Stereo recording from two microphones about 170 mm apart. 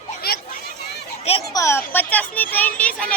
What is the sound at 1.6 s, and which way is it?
Speech, 15° left (ahead or behind).